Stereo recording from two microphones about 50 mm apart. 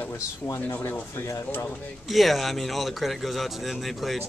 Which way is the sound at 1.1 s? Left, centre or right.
Left.